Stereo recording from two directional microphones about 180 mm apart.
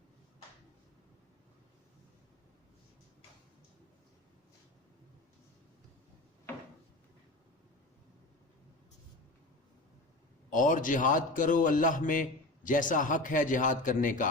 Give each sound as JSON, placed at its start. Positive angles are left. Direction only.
{"t": 10.5, "sound": "a man's voice", "side_deg": 45}